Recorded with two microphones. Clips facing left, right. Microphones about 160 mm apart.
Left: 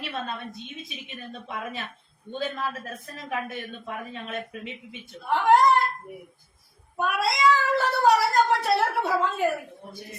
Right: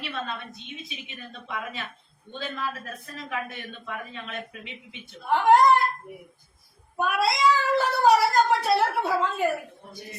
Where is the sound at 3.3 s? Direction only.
45° left (ahead or behind).